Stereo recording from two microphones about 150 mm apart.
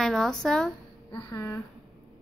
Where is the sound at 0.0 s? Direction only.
Centre (ahead or behind).